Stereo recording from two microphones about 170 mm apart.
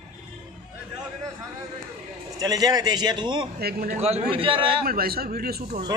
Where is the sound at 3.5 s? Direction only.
65° right (ahead or behind).